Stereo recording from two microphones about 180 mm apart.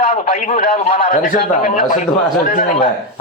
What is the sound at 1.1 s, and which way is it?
A man's voice, 45° left (ahead or behind).